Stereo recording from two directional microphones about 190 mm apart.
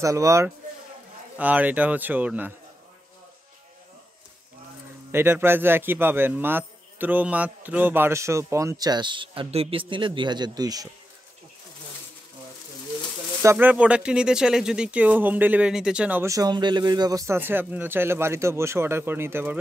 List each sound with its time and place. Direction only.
0.0 s speech: 15° right (ahead or behind)
5.1 s speech: 10° right (ahead or behind)
13.4 s speech: 10° right (ahead or behind)